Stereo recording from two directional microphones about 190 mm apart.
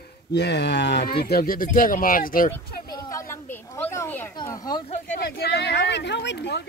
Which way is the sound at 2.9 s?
15° left (ahead or behind).